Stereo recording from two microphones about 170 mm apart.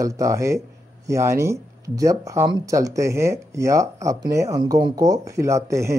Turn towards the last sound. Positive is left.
turn(degrees=-15)  # may be behind; listen again after turning